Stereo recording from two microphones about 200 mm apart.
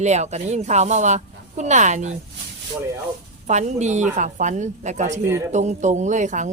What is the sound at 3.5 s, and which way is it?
Speech, 35° right (ahead or behind).